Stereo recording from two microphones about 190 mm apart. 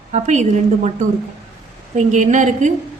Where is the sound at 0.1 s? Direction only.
40° right (ahead or behind).